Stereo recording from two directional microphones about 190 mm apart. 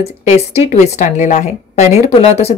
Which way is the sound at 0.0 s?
35° left (ahead or behind).